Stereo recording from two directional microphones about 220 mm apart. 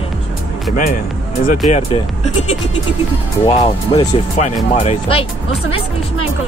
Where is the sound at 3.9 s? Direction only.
25° left (ahead or behind).